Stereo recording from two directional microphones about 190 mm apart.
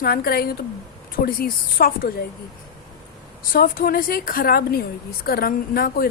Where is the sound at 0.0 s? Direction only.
50° left (ahead or behind).